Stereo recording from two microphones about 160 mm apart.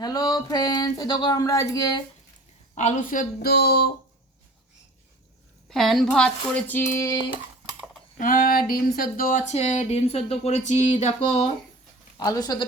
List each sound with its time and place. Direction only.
0.0 s speech: 25° left (ahead or behind)
2.7 s speech: 50° left (ahead or behind); by 3.9 s 75° left (ahead or behind)
5.6 s speech: centre (ahead or behind); by 7.2 s 20° left (ahead or behind)
8.2 s speech: 60° left (ahead or behind); by 11.5 s 45° left (ahead or behind)
12.2 s speech: 25° left (ahead or behind)